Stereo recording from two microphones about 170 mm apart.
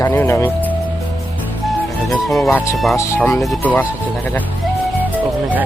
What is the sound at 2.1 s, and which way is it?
Speech, centre (ahead or behind).